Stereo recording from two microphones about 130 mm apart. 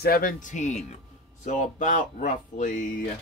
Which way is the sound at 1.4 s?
75° left (ahead or behind).